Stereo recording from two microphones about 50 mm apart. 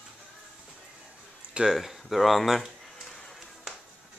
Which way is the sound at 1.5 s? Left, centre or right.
Centre.